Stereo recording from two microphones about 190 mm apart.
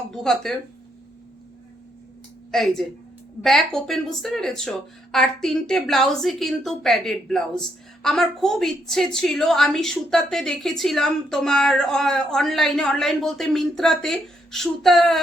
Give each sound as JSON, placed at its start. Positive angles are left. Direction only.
{"t": 0.1, "sound": "a woman's voice", "side_deg": 0}
{"t": 2.5, "sound": "a woman's voice", "side_deg": 0}